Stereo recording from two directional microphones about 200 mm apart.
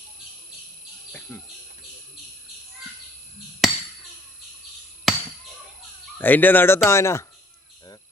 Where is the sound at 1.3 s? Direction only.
10° left (ahead or behind).